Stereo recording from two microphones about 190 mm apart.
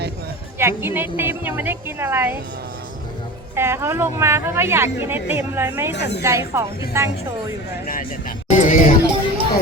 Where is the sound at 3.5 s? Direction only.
10° right (ahead or behind).